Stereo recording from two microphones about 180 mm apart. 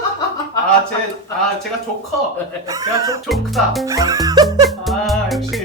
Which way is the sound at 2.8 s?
20° right (ahead or behind).